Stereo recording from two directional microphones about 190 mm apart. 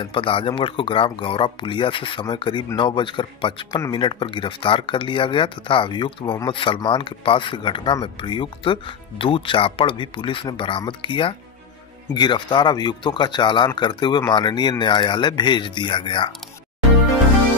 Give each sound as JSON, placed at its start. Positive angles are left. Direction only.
{"t": 0.0, "sound": "speech", "side_deg": 25}